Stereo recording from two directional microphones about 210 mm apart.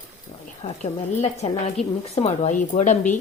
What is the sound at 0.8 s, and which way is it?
Speech, 30° left (ahead or behind).